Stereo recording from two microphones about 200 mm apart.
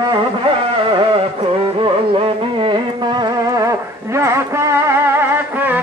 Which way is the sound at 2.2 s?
25° right (ahead or behind).